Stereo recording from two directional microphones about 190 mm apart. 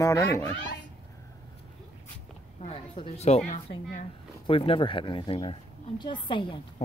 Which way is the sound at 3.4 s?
30° left (ahead or behind).